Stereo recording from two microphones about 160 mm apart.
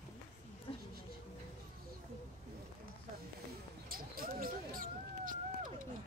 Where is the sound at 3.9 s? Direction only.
65° right (ahead or behind).